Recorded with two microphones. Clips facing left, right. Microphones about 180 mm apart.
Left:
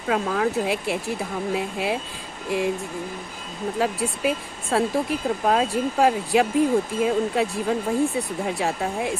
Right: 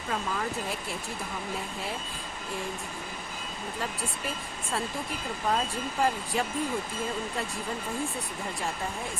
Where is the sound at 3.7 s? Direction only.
80° left.